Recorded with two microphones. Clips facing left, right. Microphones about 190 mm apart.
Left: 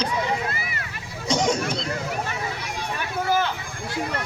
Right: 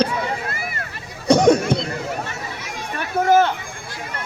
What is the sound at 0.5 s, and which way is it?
Vehicle, 50° right (ahead or behind).